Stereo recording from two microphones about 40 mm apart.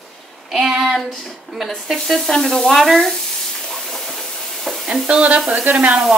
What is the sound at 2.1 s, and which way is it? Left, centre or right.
Stir, centre.